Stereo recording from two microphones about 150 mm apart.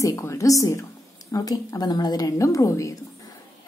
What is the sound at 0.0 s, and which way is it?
A woman's voice, 20° left (ahead or behind).